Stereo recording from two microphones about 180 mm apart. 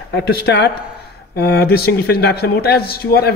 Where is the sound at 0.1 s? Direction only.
70° left (ahead or behind).